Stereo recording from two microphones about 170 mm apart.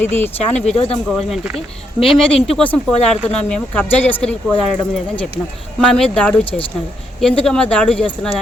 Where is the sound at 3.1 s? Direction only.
40° left (ahead or behind).